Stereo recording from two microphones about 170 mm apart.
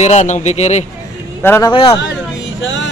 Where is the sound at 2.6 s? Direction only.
90° left.